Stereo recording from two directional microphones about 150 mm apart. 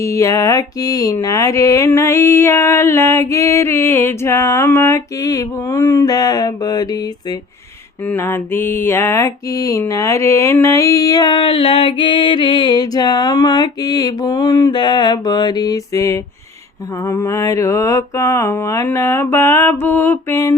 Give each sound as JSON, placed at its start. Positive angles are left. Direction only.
{"t": 0.0, "sound": "mantra", "side_deg": 20}
{"t": 8.0, "sound": "mantra", "side_deg": 15}